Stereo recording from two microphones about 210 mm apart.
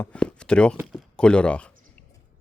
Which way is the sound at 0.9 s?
Centre (ahead or behind).